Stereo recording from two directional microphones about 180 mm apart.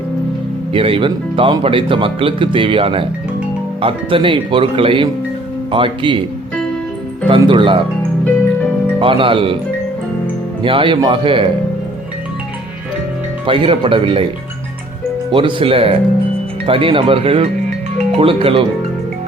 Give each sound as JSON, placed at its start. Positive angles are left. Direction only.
{"t": 0.7, "sound": "speech", "side_deg": -30}
{"t": 7.3, "sound": "speech", "side_deg": -25}
{"t": 9.0, "sound": "speech", "side_deg": -30}
{"t": 10.6, "sound": "speech", "side_deg": -30}
{"t": 13.4, "sound": "speech", "side_deg": -30}
{"t": 15.3, "sound": "speech", "side_deg": -30}